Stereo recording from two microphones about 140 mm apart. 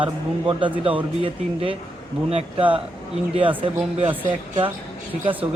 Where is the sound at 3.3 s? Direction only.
40° right (ahead or behind).